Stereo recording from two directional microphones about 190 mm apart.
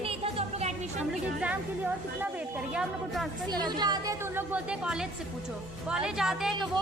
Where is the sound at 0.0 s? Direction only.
30° right (ahead or behind).